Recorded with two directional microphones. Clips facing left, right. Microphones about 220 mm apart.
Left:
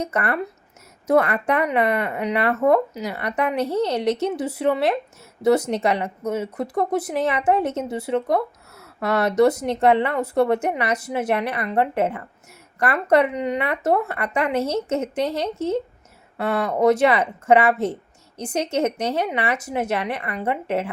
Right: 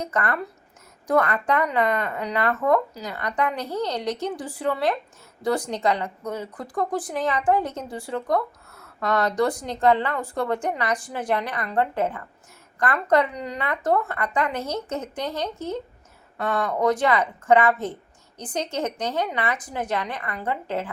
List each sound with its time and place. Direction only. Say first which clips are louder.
0.0 s speech: left 3 dB; 25° left (ahead or behind)
1.9 s a woman's voice: left 3 dB; 10° left (ahead or behind)
2.1 s speech: left 3 dB; 25° left (ahead or behind)